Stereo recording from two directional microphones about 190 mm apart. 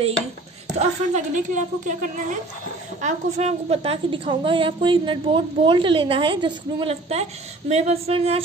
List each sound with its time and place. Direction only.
0.7 s a woman's voice: 40° right (ahead or behind)